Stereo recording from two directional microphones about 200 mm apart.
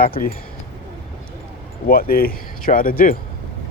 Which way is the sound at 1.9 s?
45° left (ahead or behind).